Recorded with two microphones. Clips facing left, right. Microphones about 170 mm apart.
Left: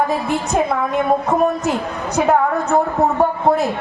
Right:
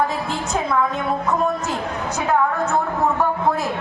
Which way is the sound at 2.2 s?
40° left (ahead or behind).